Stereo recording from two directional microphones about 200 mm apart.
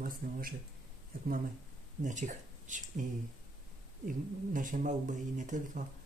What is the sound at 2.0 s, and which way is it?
Speech, 40° right (ahead or behind).